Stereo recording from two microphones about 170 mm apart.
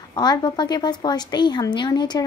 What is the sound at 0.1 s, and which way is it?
A woman's voice, 25° left (ahead or behind).